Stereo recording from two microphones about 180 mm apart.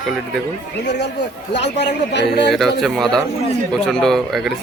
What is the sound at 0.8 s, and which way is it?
Speech, 70° left (ahead or behind).